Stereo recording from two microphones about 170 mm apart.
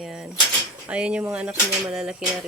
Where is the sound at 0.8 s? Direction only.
5° right (ahead or behind).